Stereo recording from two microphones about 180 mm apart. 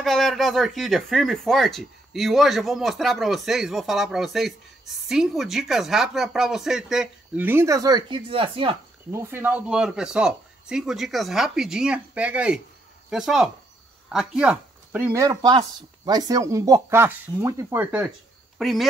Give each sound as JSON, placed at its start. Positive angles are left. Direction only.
{"t": 0.0, "sound": "speech", "side_deg": 0}
{"t": 9.1, "sound": "speech", "side_deg": -15}
{"t": 18.6, "sound": "speech", "side_deg": 0}